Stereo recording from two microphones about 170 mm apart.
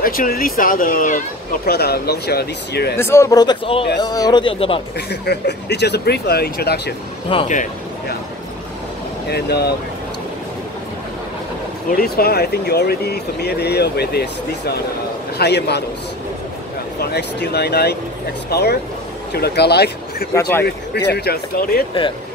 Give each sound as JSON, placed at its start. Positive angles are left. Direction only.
{"t": 0.0, "sound": "speech", "side_deg": 55}
{"t": 1.7, "sound": "speech", "side_deg": 70}
{"t": 3.0, "sound": "speech", "side_deg": 15}
{"t": 4.9, "sound": "speech", "side_deg": 75}
{"t": 7.3, "sound": "a man's voice", "side_deg": 30}
{"t": 9.3, "sound": "speech", "side_deg": 70}
{"t": 11.9, "sound": "speech", "side_deg": 65}
{"t": 15.3, "sound": "speech", "side_deg": 75}
{"t": 17.0, "sound": "speech", "side_deg": 75}